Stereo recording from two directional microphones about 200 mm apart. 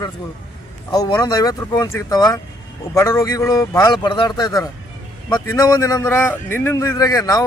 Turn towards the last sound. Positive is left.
turn(degrees=20)  # may be behind; listen again after turning